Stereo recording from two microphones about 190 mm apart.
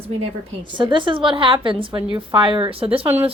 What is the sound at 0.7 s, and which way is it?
A woman's voice, 25° right (ahead or behind).